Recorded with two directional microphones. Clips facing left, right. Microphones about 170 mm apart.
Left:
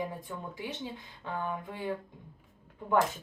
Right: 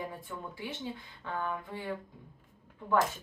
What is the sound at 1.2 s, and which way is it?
Speech, 15° left (ahead or behind).